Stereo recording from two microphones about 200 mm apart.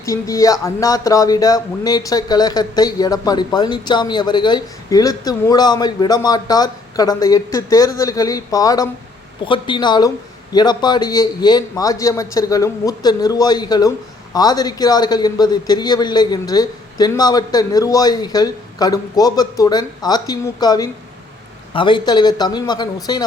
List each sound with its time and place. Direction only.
0.0 s speech: 15° left (ahead or behind)